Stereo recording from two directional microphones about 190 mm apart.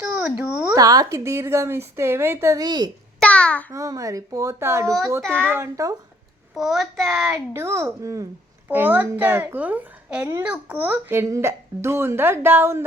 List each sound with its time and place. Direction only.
0.0 s a sound: 10° right (ahead or behind)
0.8 s a child's voice: 20° right (ahead or behind)
3.2 s a child's voice: 5° left (ahead or behind)
3.7 s a child's voice: 15° right (ahead or behind)
6.5 s a child's voice: centre (ahead or behind)